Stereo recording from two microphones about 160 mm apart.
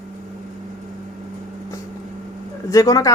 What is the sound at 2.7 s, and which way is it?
Speech, 20° left (ahead or behind).